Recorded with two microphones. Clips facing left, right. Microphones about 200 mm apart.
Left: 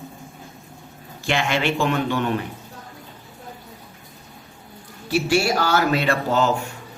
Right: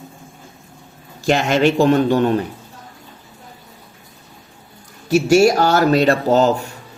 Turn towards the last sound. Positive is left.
turn(degrees=-40)  # may be behind; listen again after turning